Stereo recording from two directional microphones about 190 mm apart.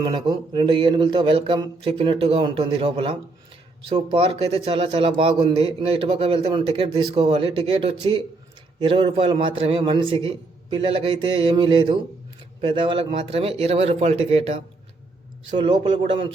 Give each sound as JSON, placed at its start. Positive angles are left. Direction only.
{"t": 0.0, "sound": "a man's voice", "side_deg": -20}